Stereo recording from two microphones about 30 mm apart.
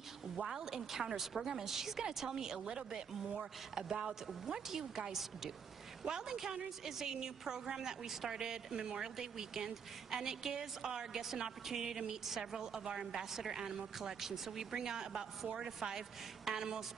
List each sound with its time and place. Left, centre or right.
0.6 s a woman's voice: centre
8.1 s a woman's voice: centre
8.4 s a woman's voice: right